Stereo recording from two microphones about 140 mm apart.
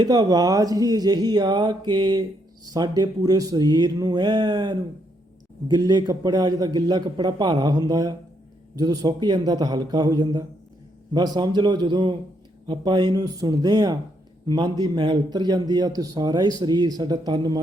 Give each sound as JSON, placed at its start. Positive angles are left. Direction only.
{"t": 0.0, "sound": "a man's voice", "side_deg": -30}